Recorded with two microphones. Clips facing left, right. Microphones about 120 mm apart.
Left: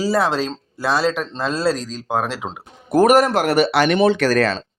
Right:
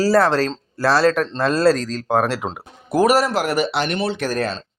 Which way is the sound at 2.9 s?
50° left (ahead or behind).